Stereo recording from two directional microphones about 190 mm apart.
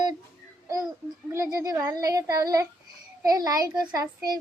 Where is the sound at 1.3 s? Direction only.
15° right (ahead or behind).